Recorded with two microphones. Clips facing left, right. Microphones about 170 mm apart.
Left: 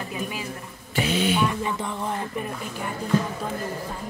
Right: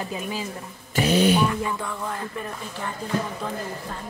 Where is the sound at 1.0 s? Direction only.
40° right (ahead or behind).